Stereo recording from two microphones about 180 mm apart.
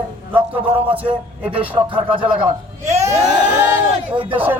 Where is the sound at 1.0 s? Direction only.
30° right (ahead or behind).